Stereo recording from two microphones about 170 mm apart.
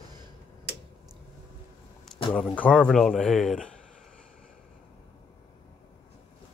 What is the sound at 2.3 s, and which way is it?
Speech, 10° left (ahead or behind).